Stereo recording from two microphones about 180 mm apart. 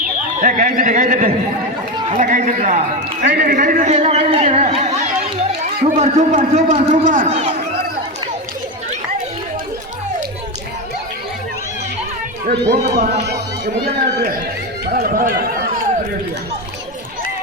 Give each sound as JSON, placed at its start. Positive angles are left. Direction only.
{"t": 0.0, "sound": "a man's voice", "side_deg": -45}
{"t": 12.9, "sound": "a man's voice", "side_deg": -45}
{"t": 14.8, "sound": "run", "side_deg": -55}